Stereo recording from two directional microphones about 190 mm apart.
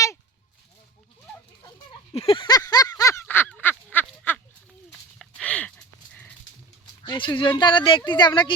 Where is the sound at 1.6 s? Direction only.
25° left (ahead or behind); by 6.3 s 10° left (ahead or behind).